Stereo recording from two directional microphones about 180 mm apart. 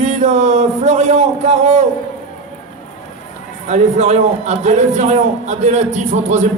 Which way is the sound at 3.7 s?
40° right (ahead or behind).